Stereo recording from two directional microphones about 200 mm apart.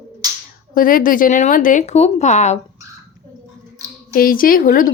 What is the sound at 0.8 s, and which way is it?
A woman's voice, 45° left (ahead or behind).